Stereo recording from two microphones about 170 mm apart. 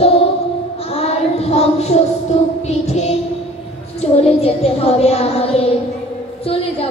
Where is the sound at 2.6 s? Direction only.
40° left (ahead or behind).